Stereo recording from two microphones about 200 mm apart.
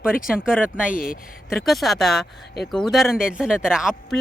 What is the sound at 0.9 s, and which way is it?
Speech, 45° left (ahead or behind).